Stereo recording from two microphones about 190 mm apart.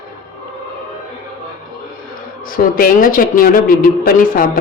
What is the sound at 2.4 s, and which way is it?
A woman's voice, 50° left (ahead or behind).